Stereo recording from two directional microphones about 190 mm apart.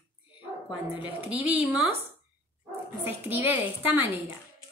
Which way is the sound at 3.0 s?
10° right (ahead or behind).